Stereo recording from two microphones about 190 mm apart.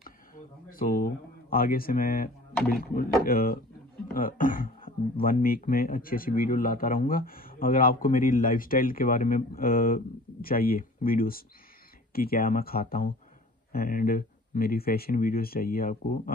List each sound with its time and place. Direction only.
0.7 s speech: 50° left (ahead or behind)